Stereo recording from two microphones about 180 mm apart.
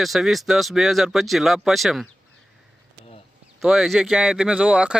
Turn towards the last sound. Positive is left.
turn(degrees=-5)  # may be behind; listen again after turning